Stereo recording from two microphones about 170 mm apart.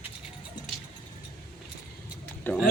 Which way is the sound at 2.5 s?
10° left (ahead or behind).